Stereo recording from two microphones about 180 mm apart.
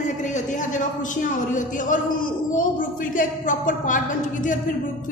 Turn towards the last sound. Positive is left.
turn(degrees=45)  # may be behind; listen again after turning